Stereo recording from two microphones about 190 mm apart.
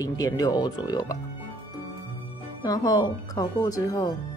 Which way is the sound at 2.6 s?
20° left (ahead or behind).